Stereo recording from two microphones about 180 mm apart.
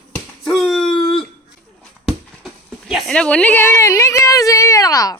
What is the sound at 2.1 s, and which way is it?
Speech, centre (ahead or behind).